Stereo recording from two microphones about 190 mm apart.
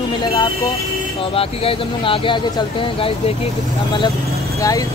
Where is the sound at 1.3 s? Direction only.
30° left (ahead or behind).